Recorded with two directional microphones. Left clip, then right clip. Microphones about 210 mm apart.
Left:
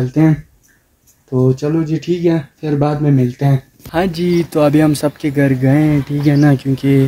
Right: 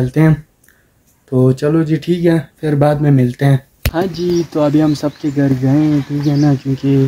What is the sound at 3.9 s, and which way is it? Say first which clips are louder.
Speech: left 1 dB; 15° left (ahead or behind).